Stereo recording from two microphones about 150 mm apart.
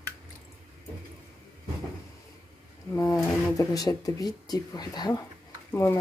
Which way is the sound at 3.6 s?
25° left (ahead or behind).